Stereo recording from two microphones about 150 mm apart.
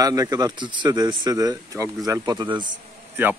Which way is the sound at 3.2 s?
15° right (ahead or behind).